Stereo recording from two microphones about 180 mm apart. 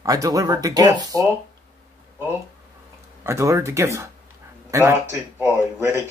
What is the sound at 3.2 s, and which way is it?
Speech, 15° right (ahead or behind).